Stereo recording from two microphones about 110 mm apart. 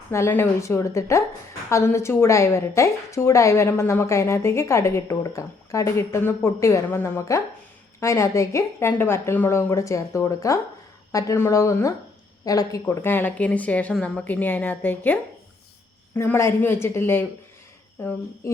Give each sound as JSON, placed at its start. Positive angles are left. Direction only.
{"t": 0.1, "sound": "a woman's voice", "side_deg": 25}
{"t": 12.9, "sound": "a woman's voice", "side_deg": 20}